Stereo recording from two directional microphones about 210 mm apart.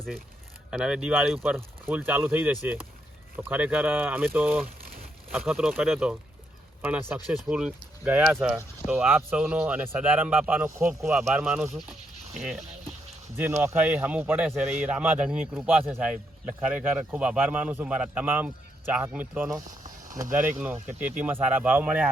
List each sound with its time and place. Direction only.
0.7 s speech: 5° right (ahead or behind)
7.3 s speech: 5° right (ahead or behind)
19.6 s a sound: 40° right (ahead or behind)
20.3 s speech: 10° right (ahead or behind)